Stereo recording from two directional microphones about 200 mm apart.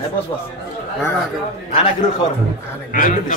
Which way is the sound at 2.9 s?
40° left (ahead or behind).